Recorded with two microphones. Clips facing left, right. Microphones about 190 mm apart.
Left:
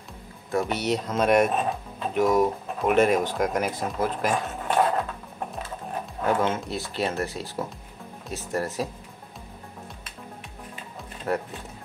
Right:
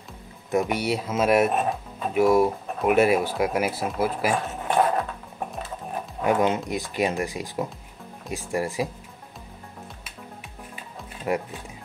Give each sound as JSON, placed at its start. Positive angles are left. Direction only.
{"t": 0.5, "sound": "speech", "side_deg": -15}
{"t": 6.2, "sound": "speech", "side_deg": -15}
{"t": 11.3, "sound": "speech", "side_deg": -10}